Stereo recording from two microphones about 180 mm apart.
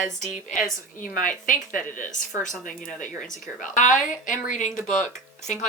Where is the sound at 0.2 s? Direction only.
45° left (ahead or behind).